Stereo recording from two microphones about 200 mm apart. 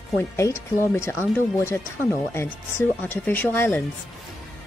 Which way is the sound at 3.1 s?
10° left (ahead or behind).